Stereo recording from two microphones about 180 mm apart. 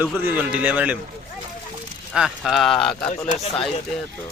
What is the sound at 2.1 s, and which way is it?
Speech, centre (ahead or behind).